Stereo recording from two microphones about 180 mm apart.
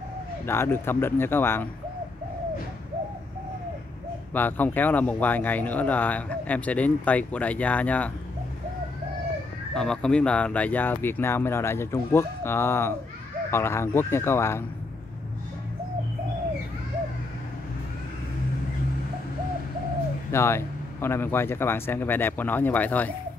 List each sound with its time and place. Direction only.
0.5 s speech: 15° left (ahead or behind)
4.3 s speech: 10° left (ahead or behind)
9.8 s speech: 5° left (ahead or behind)
20.2 s speech: 15° left (ahead or behind)